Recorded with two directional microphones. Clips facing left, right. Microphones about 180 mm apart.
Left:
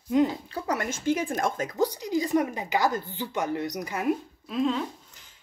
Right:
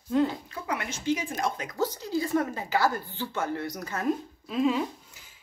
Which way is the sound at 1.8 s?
15° left (ahead or behind).